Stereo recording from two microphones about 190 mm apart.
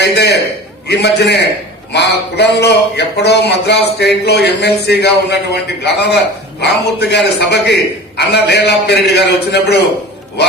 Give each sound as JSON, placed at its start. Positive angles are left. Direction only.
{"t": 0.0, "sound": "a man's voice", "side_deg": 60}